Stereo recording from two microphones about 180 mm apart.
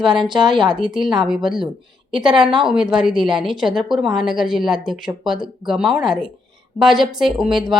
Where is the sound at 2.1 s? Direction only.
25° right (ahead or behind).